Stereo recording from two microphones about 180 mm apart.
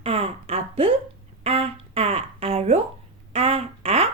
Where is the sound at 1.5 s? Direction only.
35° right (ahead or behind).